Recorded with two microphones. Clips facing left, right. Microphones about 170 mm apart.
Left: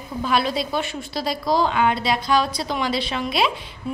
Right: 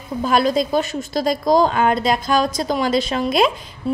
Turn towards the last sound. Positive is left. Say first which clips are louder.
# right 5 dB
turn(degrees=-45)  # may be behind; listen again after turning